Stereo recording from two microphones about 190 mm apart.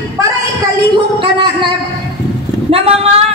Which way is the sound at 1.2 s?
25° right (ahead or behind).